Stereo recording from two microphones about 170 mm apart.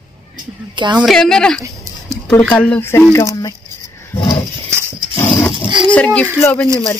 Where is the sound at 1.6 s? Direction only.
20° right (ahead or behind).